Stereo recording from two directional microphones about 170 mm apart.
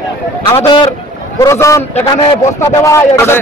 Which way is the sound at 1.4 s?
20° left (ahead or behind).